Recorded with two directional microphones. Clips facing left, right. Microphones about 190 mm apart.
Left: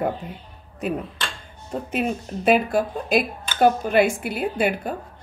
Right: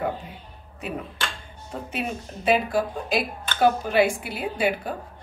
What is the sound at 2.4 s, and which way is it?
A woman's voice, 50° left (ahead or behind).